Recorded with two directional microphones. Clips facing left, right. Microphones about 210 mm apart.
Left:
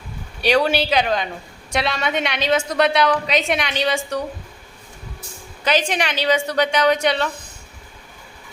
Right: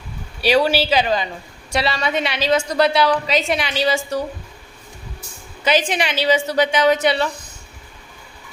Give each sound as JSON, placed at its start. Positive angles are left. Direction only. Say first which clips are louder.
{"t": 0.4, "sound": "a woman's voice", "louder": "right 1 dB", "side_deg": -5}
{"t": 5.6, "sound": "a woman's voice", "louder": "right 1 dB", "side_deg": -10}